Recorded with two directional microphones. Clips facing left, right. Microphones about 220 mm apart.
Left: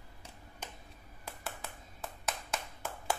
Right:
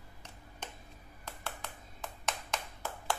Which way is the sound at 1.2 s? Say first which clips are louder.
Even; 5° left (ahead or behind).